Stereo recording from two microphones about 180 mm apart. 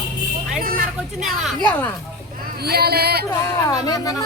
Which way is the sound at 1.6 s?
10° left (ahead or behind).